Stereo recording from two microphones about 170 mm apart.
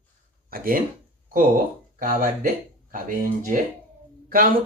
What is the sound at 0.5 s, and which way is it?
Speech, 60° right (ahead or behind).